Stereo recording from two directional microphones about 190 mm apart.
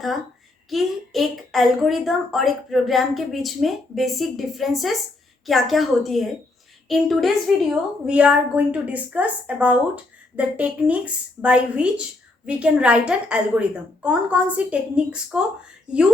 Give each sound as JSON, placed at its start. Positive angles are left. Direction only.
{"t": 0.7, "sound": "a woman's voice", "side_deg": 0}